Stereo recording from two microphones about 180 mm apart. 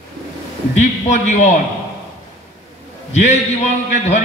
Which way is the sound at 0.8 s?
40° left (ahead or behind).